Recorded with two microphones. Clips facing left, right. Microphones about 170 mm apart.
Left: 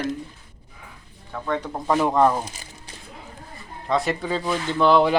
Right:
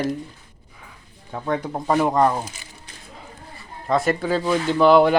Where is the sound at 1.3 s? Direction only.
20° right (ahead or behind).